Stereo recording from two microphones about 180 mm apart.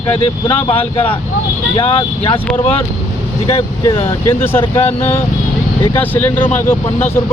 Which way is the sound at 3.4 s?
30° left (ahead or behind).